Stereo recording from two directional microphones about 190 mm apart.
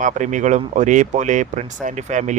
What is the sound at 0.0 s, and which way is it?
Speech, 40° right (ahead or behind).